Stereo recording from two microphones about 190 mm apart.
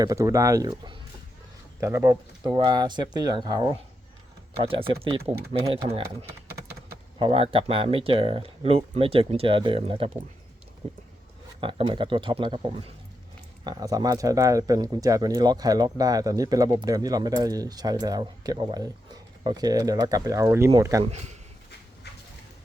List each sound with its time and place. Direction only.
0.0 s speech: 15° right (ahead or behind)
4.9 s speech: 30° right (ahead or behind)
7.2 s speech: 30° right (ahead or behind)
21.0 s speech: 35° right (ahead or behind)